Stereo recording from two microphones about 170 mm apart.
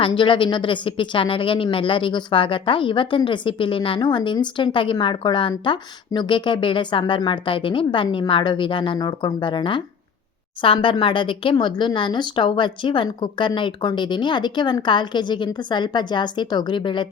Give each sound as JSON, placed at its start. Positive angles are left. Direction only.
{"t": 0.0, "sound": "speech", "side_deg": 30}